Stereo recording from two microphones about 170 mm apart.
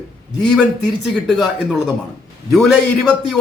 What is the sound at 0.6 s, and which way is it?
Speech, centre (ahead or behind).